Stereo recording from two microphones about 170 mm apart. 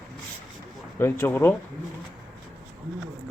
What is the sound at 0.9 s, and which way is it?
Speech, 15° left (ahead or behind).